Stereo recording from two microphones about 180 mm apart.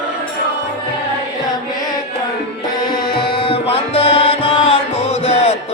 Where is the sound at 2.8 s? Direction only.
55° left (ahead or behind).